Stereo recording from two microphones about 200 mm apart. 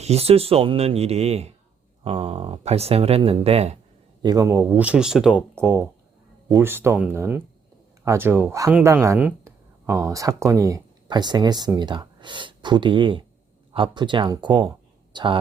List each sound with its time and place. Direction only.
0.0 s speech: 30° right (ahead or behind)
4.2 s speech: 20° right (ahead or behind)